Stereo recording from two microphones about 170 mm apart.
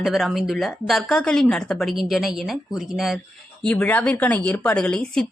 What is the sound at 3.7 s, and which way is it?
Speech, 10° left (ahead or behind).